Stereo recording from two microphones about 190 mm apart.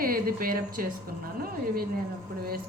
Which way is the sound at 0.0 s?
50° right (ahead or behind).